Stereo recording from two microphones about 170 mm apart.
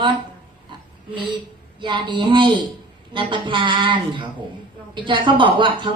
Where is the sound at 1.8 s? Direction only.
30° right (ahead or behind).